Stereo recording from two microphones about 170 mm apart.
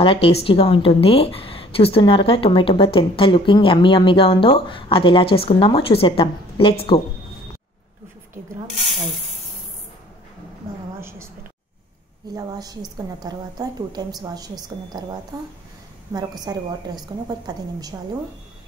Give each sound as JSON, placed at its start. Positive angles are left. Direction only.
{"t": 0.0, "sound": "a woman's voice", "side_deg": 35}
{"t": 11.0, "sound": "a woman's voice", "side_deg": -15}
{"t": 12.4, "sound": "a woman's voice", "side_deg": -20}